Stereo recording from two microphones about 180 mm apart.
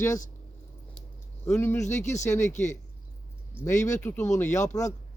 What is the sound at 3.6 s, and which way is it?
Speech, 15° left (ahead or behind).